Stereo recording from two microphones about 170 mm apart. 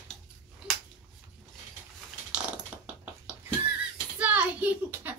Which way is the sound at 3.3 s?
5° right (ahead or behind).